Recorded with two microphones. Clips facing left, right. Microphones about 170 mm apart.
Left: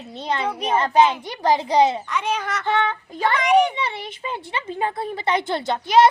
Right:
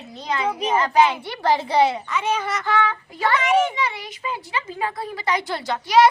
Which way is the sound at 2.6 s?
25° left (ahead or behind).